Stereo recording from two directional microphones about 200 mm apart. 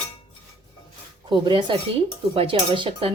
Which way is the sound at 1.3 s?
25° right (ahead or behind).